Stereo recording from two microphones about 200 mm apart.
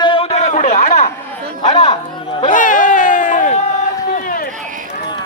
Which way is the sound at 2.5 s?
40° left (ahead or behind).